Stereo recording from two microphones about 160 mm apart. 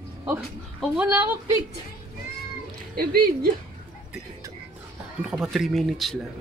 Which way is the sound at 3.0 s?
65° right (ahead or behind).